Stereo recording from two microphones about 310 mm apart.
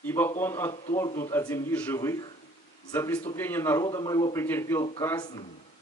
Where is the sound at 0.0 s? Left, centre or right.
Centre.